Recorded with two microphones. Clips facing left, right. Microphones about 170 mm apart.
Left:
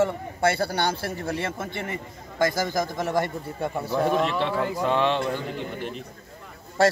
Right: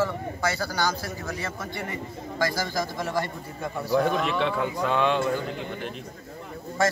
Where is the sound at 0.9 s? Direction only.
60° left (ahead or behind).